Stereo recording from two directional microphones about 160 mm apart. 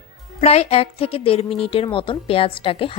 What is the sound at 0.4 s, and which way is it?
A woman's voice, 40° left (ahead or behind).